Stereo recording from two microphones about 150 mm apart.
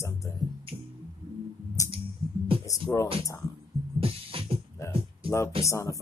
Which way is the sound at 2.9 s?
10° left (ahead or behind).